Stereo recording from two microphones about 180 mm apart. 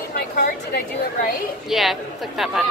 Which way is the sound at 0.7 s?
55° left (ahead or behind).